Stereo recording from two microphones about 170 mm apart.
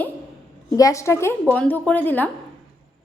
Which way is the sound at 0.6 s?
20° left (ahead or behind).